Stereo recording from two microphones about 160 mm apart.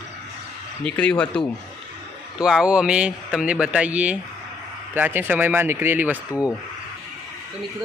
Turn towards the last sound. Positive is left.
turn(degrees=20)  # may be behind; listen again after turning